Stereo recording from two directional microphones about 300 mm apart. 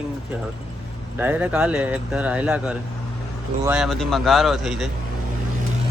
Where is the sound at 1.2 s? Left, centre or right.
Centre.